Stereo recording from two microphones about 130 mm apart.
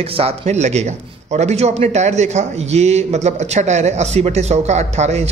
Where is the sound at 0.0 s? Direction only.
50° right (ahead or behind).